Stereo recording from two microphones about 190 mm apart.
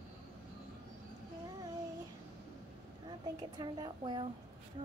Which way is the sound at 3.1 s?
25° right (ahead or behind).